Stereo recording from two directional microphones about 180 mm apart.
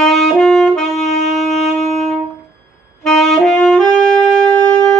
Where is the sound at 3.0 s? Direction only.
Centre (ahead or behind).